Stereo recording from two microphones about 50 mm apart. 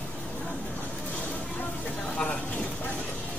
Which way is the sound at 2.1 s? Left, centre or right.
Left.